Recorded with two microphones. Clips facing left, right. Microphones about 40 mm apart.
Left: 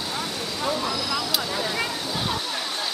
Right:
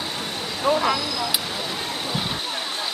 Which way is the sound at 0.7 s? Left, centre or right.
Right.